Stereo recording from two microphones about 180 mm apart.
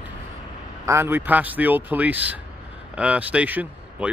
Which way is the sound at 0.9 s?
15° right (ahead or behind).